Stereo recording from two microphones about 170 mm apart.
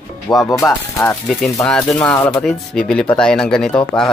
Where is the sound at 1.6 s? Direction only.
5° left (ahead or behind).